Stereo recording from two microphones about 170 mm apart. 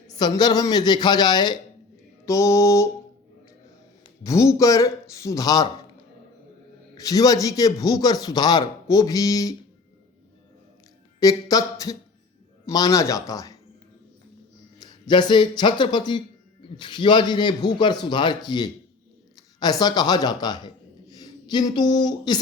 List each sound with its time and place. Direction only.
0.2 s a man's voice: 25° left (ahead or behind)
2.2 s mantra: 20° left (ahead or behind)
4.2 s a man's voice: 20° left (ahead or behind)
6.9 s a man's voice: 20° left (ahead or behind)
11.2 s a man's voice: 20° left (ahead or behind)
14.8 s a man's voice: 25° left (ahead or behind)